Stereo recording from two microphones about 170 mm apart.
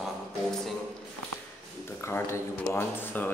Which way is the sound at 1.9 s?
15° left (ahead or behind).